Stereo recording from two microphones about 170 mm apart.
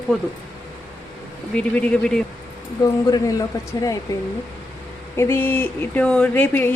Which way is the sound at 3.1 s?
20° left (ahead or behind).